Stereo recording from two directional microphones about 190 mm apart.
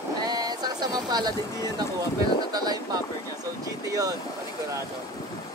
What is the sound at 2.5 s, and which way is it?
Speech, 20° right (ahead or behind).